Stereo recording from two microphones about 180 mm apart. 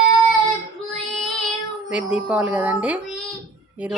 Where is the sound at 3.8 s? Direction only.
5° right (ahead or behind).